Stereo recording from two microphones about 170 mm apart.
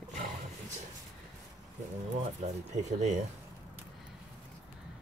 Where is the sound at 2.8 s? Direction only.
40° right (ahead or behind).